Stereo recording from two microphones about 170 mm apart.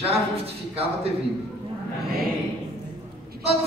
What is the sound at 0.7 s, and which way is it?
Speech, 35° right (ahead or behind).